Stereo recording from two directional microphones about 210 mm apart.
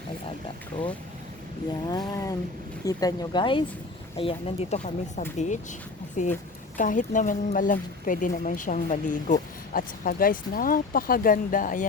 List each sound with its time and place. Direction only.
0.7 s speech: 25° left (ahead or behind)
1.9 s vehicle: 15° left (ahead or behind)
2.8 s speech: 15° left (ahead or behind); by 11.9 s 40° left (ahead or behind)